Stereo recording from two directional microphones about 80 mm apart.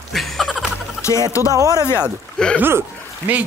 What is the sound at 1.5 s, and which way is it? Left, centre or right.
Speech, right.